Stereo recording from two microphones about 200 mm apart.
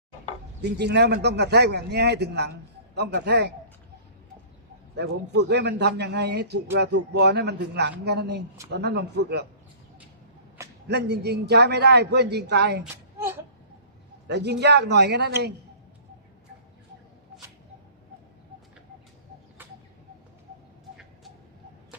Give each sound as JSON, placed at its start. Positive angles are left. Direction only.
{"t": 0.6, "sound": "a man's voice", "side_deg": -55}
{"t": 4.9, "sound": "a man's voice", "side_deg": -55}
{"t": 10.8, "sound": "a man's voice", "side_deg": -55}
{"t": 12.8, "sound": "a sound", "side_deg": -10}
{"t": 14.3, "sound": "a man's voice", "side_deg": -60}